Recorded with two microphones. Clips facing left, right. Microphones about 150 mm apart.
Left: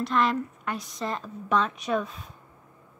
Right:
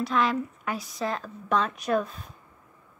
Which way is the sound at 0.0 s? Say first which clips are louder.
Even; centre (ahead or behind).